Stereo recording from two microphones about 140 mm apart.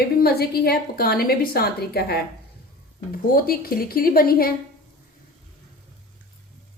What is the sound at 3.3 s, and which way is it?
A woman's voice, 90° left.